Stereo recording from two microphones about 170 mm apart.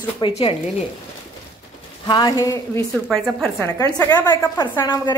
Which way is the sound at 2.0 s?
25° left (ahead or behind).